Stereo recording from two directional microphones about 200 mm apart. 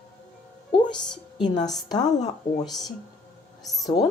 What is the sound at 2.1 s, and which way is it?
Speech, 35° left (ahead or behind).